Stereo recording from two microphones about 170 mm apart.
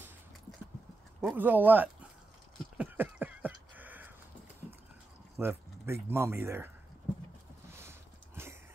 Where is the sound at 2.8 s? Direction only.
10° right (ahead or behind).